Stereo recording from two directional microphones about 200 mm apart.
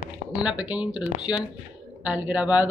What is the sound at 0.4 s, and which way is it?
Speech, 5° right (ahead or behind).